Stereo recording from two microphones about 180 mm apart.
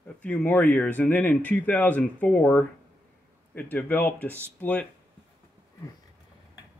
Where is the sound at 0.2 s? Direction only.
10° left (ahead or behind).